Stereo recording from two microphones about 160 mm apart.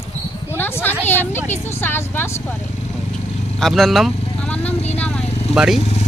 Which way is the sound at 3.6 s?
Centre (ahead or behind).